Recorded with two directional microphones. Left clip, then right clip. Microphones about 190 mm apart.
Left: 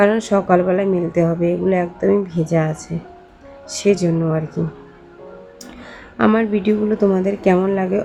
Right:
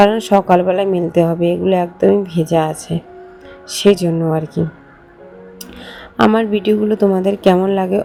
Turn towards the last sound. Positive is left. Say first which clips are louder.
# right 3 dB
turn(degrees=-25)  # may be behind; listen again after turning